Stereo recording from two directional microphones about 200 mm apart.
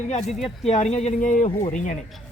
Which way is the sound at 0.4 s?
30° left (ahead or behind).